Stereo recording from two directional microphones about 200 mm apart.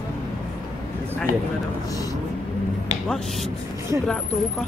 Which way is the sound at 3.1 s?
Centre (ahead or behind).